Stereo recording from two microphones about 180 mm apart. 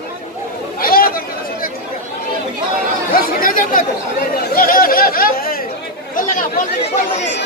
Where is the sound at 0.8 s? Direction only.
55° left (ahead or behind).